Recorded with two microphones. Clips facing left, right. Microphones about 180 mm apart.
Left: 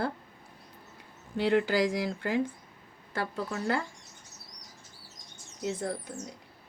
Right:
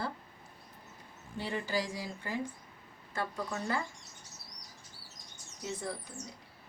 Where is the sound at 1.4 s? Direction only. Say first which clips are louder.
Left 10 dB; 75° left (ahead or behind).